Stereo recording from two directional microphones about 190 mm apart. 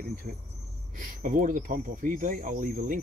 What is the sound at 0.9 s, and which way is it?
Speech, 45° right (ahead or behind).